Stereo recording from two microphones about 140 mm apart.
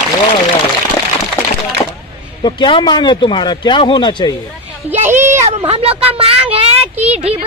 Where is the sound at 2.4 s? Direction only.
35° left (ahead or behind).